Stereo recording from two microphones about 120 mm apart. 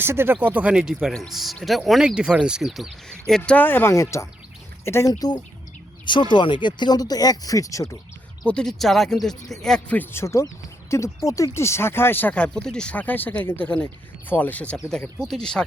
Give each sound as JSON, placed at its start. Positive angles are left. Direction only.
{"t": 0.0, "sound": "speech", "side_deg": -20}
{"t": 6.1, "sound": "speech", "side_deg": 40}
{"t": 8.4, "sound": "speech", "side_deg": 5}